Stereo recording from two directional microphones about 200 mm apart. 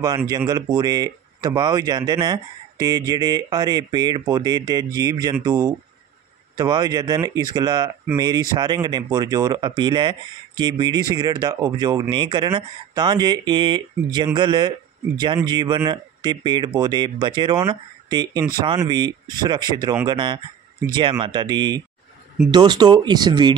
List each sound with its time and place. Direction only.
0.0 s speech: 20° right (ahead or behind)